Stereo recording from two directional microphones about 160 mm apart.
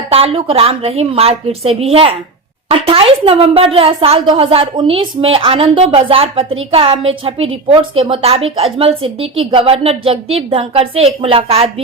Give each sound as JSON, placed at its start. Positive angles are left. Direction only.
{"t": 0.1, "sound": "speech", "side_deg": -35}